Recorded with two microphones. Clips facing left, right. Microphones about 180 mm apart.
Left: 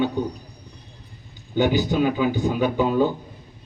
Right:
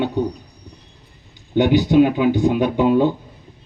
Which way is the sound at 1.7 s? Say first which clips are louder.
Right 10 dB; 65° right (ahead or behind).